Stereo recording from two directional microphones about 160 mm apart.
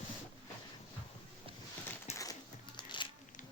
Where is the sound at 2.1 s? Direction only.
25° left (ahead or behind).